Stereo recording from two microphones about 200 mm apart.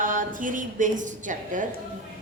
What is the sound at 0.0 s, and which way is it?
A woman's voice, 40° right (ahead or behind).